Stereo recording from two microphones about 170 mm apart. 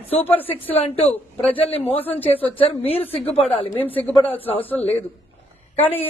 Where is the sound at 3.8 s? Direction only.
10° left (ahead or behind).